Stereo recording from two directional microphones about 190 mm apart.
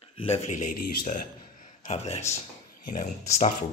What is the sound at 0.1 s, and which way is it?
A man's voice, 30° left (ahead or behind).